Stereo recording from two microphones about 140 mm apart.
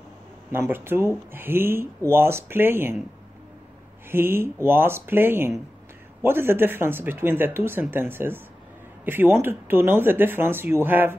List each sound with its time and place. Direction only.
0.5 s speech: 15° right (ahead or behind)
4.1 s speech: 15° right (ahead or behind)